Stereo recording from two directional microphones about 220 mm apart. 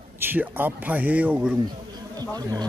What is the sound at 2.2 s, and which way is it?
Speech, 15° right (ahead or behind).